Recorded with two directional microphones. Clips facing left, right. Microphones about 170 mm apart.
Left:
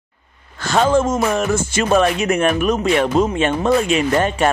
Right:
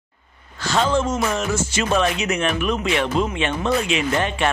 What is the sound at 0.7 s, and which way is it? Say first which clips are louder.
Speech: left 4 dB; 50° left (ahead or behind).